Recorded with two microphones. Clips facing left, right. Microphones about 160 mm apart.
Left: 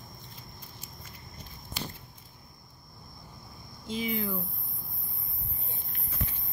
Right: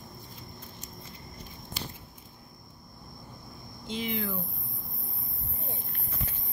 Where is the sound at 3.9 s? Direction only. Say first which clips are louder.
Left 1 dB; 5° left (ahead or behind).